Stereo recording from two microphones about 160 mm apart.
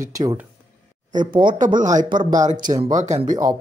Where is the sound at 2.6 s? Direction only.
25° right (ahead or behind).